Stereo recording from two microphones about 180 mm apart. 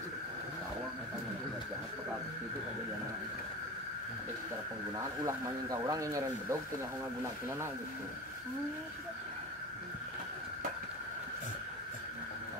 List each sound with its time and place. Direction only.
4.9 s speech: 20° right (ahead or behind)